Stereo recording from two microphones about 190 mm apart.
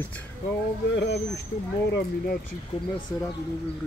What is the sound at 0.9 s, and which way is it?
Speech, 65° left (ahead or behind).